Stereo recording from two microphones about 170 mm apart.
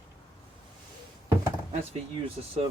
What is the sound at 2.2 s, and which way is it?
Speech, 35° right (ahead or behind).